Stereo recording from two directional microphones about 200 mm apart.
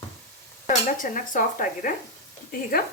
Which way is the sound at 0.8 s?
40° left (ahead or behind).